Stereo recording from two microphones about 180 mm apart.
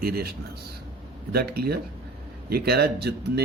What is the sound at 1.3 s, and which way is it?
A man's voice, 60° right (ahead or behind).